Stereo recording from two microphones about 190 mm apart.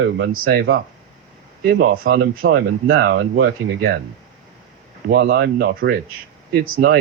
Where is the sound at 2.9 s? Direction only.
80° right.